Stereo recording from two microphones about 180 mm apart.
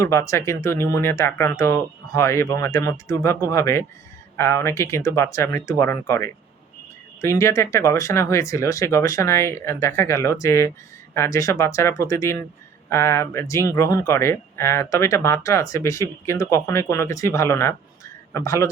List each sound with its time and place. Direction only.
0.0 s speech: 15° left (ahead or behind)